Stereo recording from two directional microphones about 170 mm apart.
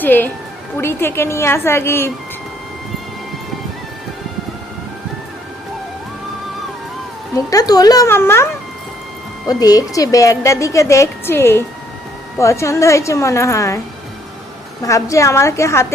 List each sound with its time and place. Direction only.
0.0 s speech: 10° left (ahead or behind)
7.3 s a woman's voice: 20° left (ahead or behind)
9.5 s a woman's voice: 20° left (ahead or behind)